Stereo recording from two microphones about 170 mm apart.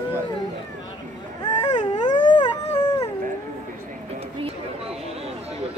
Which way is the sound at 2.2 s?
25° left (ahead or behind).